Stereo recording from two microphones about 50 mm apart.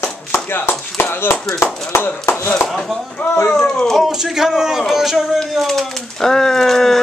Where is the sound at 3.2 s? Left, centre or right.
Left.